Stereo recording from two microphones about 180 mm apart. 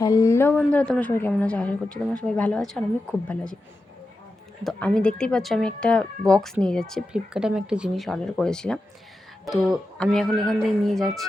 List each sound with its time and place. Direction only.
0.0 s a woman's voice: 20° left (ahead or behind)
4.6 s speech: 5° left (ahead or behind)